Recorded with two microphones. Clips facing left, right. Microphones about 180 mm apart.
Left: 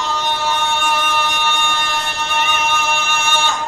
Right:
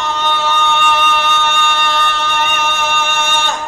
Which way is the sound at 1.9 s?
70° right (ahead or behind).